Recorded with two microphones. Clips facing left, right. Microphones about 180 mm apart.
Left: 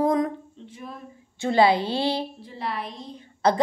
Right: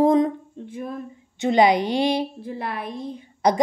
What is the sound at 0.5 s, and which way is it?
Speech, 50° right (ahead or behind).